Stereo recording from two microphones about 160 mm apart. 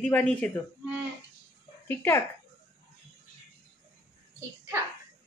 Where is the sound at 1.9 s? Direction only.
15° left (ahead or behind).